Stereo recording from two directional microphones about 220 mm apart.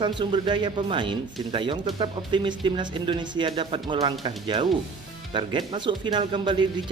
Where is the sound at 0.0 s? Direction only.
20° right (ahead or behind).